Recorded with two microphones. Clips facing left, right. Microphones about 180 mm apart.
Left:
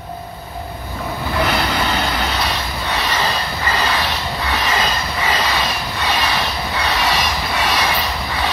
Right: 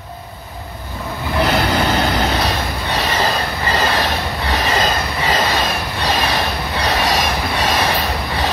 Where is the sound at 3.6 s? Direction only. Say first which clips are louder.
Right 2 dB; 45° right (ahead or behind).